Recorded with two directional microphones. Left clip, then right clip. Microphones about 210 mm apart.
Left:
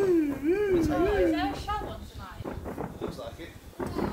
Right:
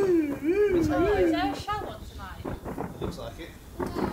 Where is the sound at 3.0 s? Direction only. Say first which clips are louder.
Right 1 dB; 50° right (ahead or behind).